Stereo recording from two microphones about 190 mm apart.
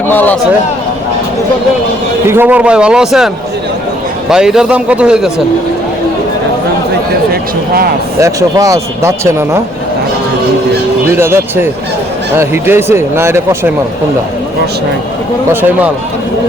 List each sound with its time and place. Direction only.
0.1 s a man's voice: 10° left (ahead or behind)
2.2 s a man's voice: 10° right (ahead or behind)
4.3 s a man's voice: 5° right (ahead or behind)
8.2 s speech: 15° right (ahead or behind)
11.1 s speech: 10° right (ahead or behind)